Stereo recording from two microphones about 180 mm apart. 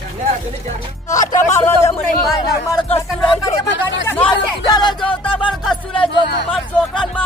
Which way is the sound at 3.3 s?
20° left (ahead or behind).